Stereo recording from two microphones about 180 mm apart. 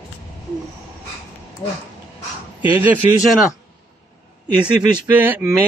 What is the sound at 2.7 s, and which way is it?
Speech, 10° right (ahead or behind).